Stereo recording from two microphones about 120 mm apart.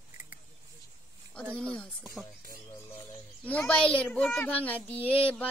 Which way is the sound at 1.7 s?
5° left (ahead or behind).